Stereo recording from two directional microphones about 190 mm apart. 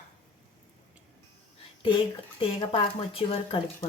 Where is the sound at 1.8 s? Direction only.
30° left (ahead or behind).